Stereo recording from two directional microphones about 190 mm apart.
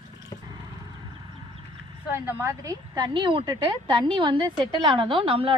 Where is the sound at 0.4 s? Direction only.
20° right (ahead or behind).